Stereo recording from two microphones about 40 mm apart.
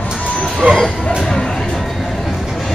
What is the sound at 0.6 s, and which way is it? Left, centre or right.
Speech, right.